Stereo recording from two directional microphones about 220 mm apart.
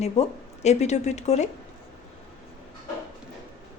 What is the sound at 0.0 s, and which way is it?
Speech, 30° left (ahead or behind).